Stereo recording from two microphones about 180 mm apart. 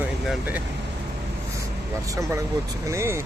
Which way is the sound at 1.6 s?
15° right (ahead or behind).